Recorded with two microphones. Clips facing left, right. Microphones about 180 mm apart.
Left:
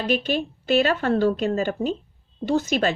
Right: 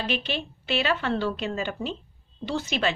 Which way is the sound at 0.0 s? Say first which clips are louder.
Left 6 dB; 45° left (ahead or behind).